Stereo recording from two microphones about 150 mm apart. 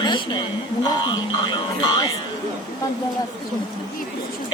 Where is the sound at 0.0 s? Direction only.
30° left (ahead or behind).